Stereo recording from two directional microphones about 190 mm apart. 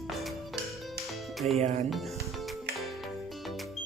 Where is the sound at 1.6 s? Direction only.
35° right (ahead or behind).